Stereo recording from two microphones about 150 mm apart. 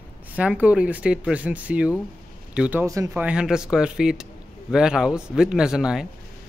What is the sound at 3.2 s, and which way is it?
Speech, 5° right (ahead or behind).